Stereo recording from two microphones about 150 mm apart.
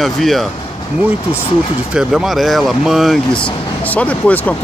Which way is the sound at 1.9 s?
5° right (ahead or behind).